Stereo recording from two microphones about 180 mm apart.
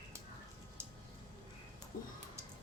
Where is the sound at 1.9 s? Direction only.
50° left (ahead or behind).